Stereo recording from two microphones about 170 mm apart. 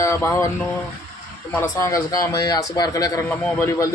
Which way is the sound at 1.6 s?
15° left (ahead or behind).